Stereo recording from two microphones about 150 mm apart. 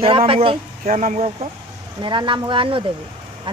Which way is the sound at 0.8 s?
60° right (ahead or behind).